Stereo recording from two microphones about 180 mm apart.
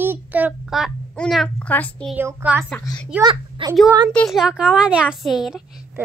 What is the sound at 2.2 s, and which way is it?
Speech, 15° right (ahead or behind).